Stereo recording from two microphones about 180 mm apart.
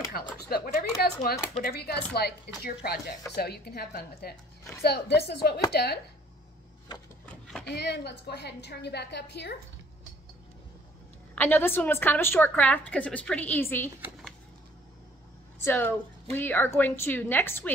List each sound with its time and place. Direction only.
0.5 s a woman's voice: 60° left (ahead or behind)
7.6 s a woman's voice: 65° left (ahead or behind)
11.3 s a woman's voice: 10° left (ahead or behind)
15.6 s a woman's voice: 10° left (ahead or behind)